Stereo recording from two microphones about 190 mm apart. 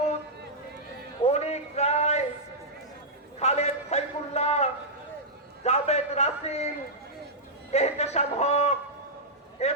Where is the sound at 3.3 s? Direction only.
35° left (ahead or behind).